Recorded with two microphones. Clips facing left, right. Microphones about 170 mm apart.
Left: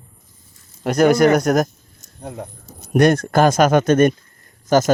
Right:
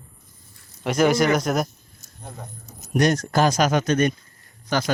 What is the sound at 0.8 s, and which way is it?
Speech, 40° left (ahead or behind).